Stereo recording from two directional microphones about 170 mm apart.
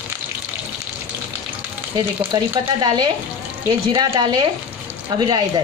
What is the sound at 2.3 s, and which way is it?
A woman's voice, 25° right (ahead or behind).